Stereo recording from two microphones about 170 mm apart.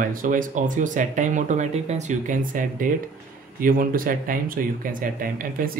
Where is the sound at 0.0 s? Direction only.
55° right (ahead or behind).